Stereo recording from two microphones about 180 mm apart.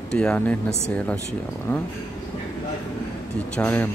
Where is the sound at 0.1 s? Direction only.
5° left (ahead or behind).